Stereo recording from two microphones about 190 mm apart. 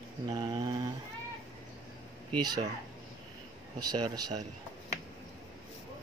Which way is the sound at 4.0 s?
20° right (ahead or behind).